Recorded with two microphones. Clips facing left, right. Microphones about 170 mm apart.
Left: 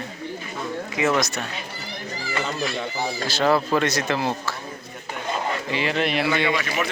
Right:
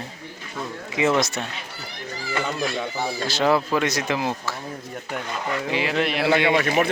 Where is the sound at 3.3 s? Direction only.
15° right (ahead or behind).